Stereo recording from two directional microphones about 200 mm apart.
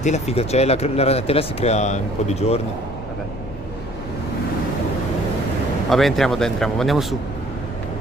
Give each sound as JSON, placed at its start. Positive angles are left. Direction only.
{"t": 0.0, "sound": "speech", "side_deg": 30}
{"t": 5.9, "sound": "speech", "side_deg": 0}